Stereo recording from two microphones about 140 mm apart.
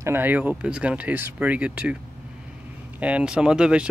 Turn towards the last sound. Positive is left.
turn(degrees=-5)  # may be behind; listen again after turning